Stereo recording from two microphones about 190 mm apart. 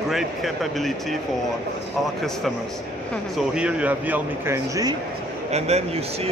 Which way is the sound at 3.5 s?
5° right (ahead or behind).